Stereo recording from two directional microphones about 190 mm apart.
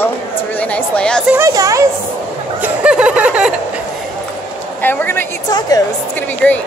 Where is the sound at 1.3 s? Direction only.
15° right (ahead or behind).